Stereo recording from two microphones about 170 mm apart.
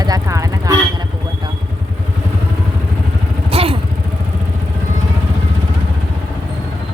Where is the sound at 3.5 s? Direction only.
35° right (ahead or behind).